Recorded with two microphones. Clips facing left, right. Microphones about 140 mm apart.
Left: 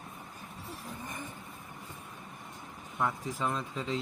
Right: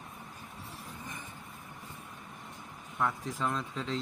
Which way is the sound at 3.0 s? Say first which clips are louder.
Even; 5° left (ahead or behind).